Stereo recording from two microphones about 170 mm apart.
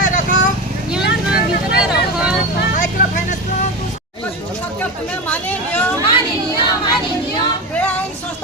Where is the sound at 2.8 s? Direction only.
45° left (ahead or behind).